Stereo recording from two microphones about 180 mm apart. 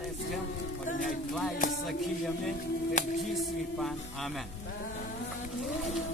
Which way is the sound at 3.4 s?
Centre (ahead or behind).